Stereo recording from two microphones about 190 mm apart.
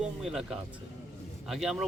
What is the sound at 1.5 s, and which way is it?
Speech, centre (ahead or behind).